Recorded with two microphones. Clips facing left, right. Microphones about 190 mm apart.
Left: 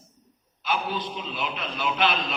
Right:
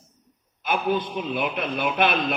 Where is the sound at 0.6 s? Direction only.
55° right (ahead or behind).